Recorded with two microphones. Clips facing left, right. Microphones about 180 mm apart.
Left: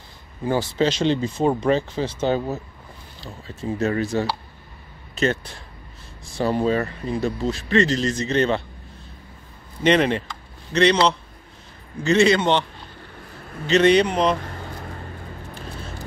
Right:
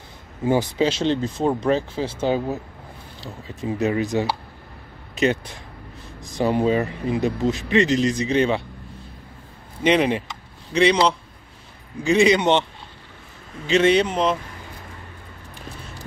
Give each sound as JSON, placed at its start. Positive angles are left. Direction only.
{"t": 0.4, "sound": "speech", "side_deg": -20}
{"t": 0.7, "sound": "speech", "side_deg": -5}
{"t": 9.8, "sound": "speech", "side_deg": -10}
{"t": 10.2, "sound": "a sound", "side_deg": -10}
{"t": 12.0, "sound": "speech", "side_deg": -15}
{"t": 13.7, "sound": "speech", "side_deg": -5}